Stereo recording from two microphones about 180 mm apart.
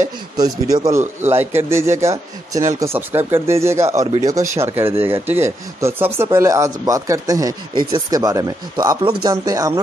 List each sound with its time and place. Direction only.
0.4 s speech: 20° right (ahead or behind)